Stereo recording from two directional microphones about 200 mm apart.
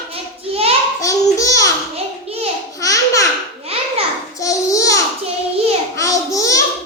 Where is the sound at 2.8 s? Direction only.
15° left (ahead or behind).